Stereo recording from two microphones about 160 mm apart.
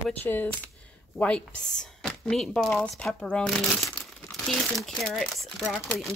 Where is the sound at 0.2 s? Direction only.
15° left (ahead or behind).